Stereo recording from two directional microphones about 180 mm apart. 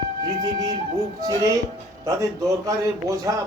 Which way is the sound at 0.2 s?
20° right (ahead or behind).